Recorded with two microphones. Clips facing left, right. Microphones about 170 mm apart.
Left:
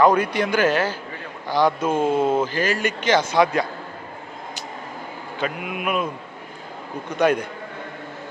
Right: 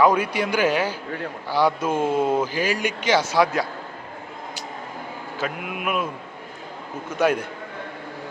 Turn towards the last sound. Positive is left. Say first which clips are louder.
# left 2 dB
turn(degrees=-5)  # may be behind; listen again after turning